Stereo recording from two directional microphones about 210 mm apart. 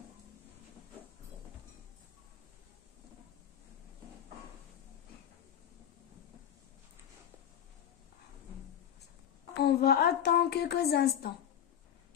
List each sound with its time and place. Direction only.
9.6 s a woman's voice: 45° left (ahead or behind)